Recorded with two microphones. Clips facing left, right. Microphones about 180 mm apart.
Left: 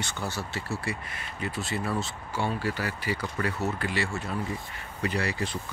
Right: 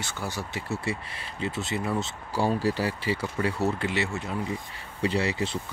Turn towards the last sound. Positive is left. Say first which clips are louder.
# right 3 dB
turn(degrees=-25)  # may be behind; listen again after turning